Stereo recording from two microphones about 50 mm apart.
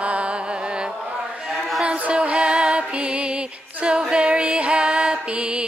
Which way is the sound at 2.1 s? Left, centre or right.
Right.